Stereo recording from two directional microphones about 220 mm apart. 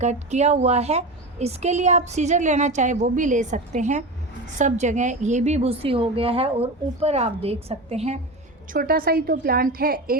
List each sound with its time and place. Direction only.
0.0 s a woman's voice: 30° right (ahead or behind)
8.7 s a woman's voice: 40° right (ahead or behind)